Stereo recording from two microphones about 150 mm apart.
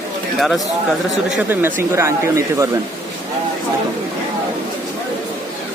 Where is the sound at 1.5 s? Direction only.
15° right (ahead or behind).